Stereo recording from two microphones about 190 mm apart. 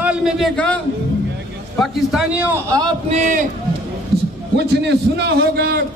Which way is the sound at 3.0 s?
35° right (ahead or behind).